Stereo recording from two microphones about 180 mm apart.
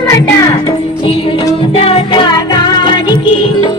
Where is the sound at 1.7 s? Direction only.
35° left (ahead or behind).